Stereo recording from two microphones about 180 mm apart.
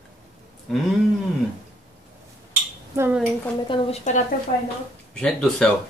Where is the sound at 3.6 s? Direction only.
30° left (ahead or behind).